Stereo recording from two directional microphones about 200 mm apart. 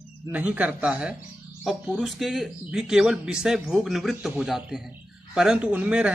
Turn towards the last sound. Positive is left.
turn(degrees=-5)  # may be behind; listen again after turning